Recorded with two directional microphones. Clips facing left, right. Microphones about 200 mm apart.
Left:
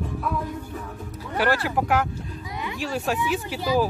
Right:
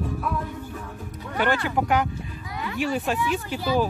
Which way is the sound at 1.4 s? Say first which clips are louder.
Even; 5° left (ahead or behind).